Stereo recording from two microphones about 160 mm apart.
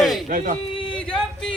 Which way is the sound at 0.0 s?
Centre (ahead or behind).